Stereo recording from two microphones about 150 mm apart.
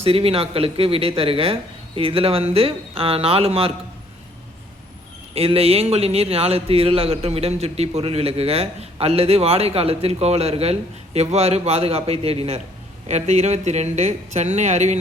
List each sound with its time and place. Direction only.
0.0 s speech: 40° right (ahead or behind)
5.3 s a man's voice: 40° right (ahead or behind)